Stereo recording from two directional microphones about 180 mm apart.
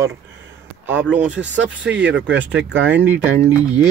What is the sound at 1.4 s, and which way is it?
Speech, 80° right.